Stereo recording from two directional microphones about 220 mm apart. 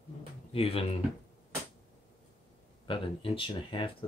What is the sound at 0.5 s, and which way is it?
Speech, 25° left (ahead or behind).